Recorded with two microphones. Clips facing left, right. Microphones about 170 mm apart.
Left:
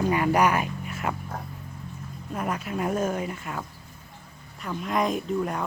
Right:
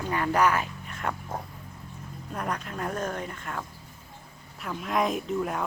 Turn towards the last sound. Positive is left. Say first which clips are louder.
# left 2 dB
turn(degrees=0)  # may be behind; listen again after turning